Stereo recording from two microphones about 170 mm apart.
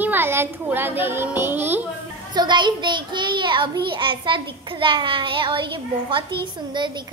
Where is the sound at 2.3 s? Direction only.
25° right (ahead or behind).